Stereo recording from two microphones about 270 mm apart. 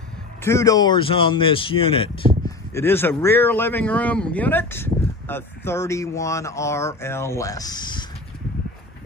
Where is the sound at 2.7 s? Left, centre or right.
Centre.